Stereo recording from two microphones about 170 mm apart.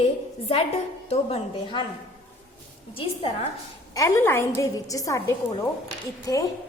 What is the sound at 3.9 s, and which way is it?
A woman's voice, 15° left (ahead or behind).